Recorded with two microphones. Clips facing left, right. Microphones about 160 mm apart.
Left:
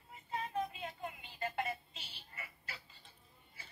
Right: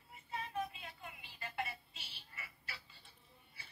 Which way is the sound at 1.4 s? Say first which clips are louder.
Left 5 dB; 45° left (ahead or behind).